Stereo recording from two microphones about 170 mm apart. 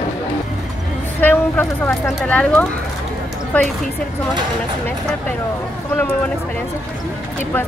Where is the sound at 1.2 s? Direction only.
10° left (ahead or behind).